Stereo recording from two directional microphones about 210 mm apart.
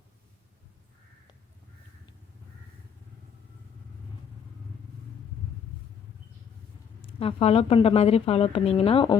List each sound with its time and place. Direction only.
7.2 s speech: 25° left (ahead or behind)